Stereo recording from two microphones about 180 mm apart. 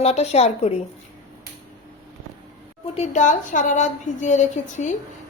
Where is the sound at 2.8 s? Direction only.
35° left (ahead or behind).